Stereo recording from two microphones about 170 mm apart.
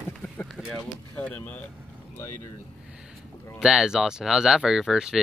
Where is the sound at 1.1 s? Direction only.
10° left (ahead or behind).